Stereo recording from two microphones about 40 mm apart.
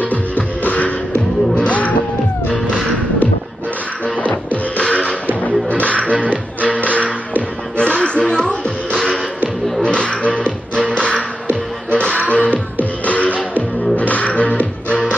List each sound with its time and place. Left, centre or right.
0.0 s music: left
4.8 s beatboxing: left
6.1 s music: right
7.7 s music: left
9.8 s music: left
11.9 s music: left
12.3 s music: left